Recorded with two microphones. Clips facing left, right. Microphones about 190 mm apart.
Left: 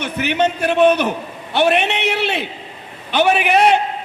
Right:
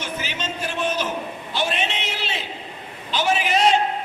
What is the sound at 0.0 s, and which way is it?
A man's voice, 65° left (ahead or behind).